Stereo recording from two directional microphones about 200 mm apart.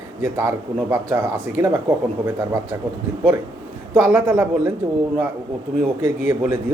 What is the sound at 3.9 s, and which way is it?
Speech, 15° right (ahead or behind).